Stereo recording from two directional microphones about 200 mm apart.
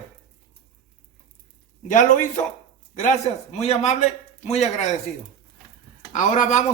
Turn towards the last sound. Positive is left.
turn(degrees=40)  # may be behind; listen again after turning